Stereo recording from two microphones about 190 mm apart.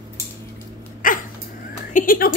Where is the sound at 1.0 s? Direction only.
45° left (ahead or behind).